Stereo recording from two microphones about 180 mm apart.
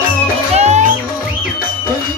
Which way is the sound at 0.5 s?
40° right (ahead or behind).